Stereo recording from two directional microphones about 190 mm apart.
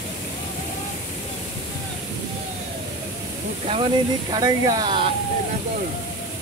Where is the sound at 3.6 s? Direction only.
25° right (ahead or behind).